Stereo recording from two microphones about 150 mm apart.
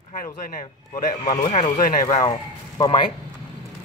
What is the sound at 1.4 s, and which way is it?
Speech, 40° left (ahead or behind).